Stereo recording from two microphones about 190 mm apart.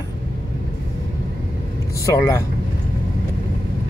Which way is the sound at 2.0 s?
15° left (ahead or behind).